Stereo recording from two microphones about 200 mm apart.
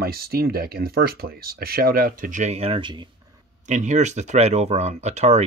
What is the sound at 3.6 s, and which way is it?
Speech, 35° right (ahead or behind).